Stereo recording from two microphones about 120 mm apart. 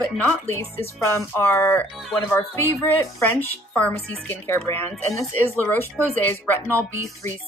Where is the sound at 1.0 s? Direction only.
20° left (ahead or behind).